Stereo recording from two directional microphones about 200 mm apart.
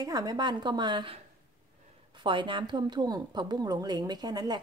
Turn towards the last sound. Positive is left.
turn(degrees=-20)  # may be behind; listen again after turning